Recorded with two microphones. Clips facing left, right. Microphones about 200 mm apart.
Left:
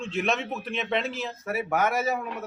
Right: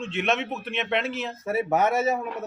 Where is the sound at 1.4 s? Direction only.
25° right (ahead or behind).